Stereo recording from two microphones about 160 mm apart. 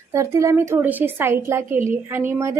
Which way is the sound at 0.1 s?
20° right (ahead or behind).